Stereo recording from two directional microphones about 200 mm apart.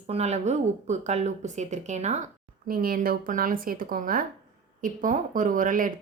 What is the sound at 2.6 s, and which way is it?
Speech, 45° right (ahead or behind).